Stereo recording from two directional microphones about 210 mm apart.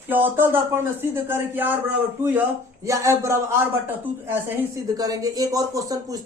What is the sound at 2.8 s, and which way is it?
A man's voice, 15° right (ahead or behind).